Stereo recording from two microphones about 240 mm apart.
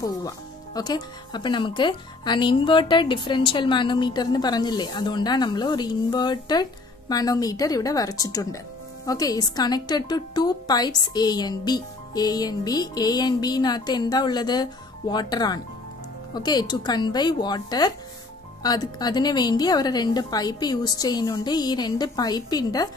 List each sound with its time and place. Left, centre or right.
0.7 s speech: centre